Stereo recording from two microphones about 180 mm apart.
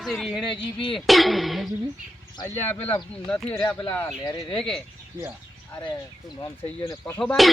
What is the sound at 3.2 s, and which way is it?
Speech, 5° left (ahead or behind).